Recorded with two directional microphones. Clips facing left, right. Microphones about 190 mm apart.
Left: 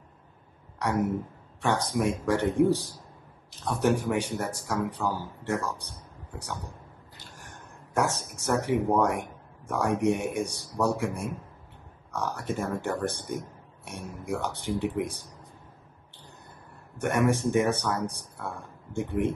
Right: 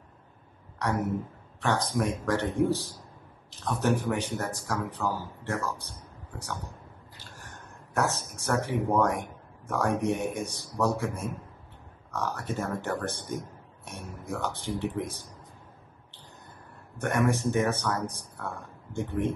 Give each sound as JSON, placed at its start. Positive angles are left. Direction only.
{"t": 0.7, "sound": "a man's voice", "side_deg": 10}
{"t": 3.6, "sound": "a man's voice", "side_deg": 15}
{"t": 7.9, "sound": "a man's voice", "side_deg": 15}
{"t": 17.0, "sound": "a man's voice", "side_deg": 15}